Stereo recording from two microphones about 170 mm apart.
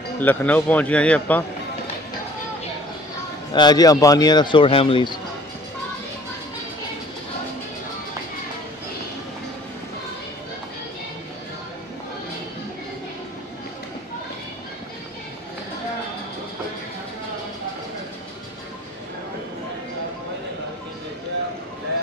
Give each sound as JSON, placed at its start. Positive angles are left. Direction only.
{"t": 0.2, "sound": "a man's voice", "side_deg": 10}
{"t": 3.5, "sound": "a man's voice", "side_deg": 25}